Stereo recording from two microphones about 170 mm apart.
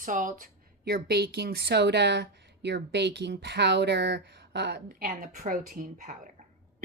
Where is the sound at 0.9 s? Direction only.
65° right (ahead or behind); by 4.8 s 80° right.